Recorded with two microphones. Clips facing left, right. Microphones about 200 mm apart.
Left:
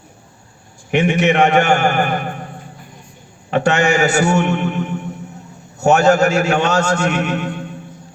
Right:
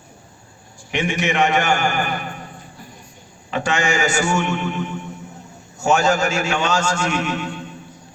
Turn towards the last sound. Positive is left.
turn(degrees=55)  # may be behind; listen again after turning